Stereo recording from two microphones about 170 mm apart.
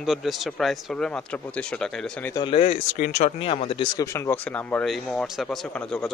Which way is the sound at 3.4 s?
35° left (ahead or behind).